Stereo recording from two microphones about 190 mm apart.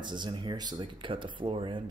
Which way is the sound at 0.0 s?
25° right (ahead or behind).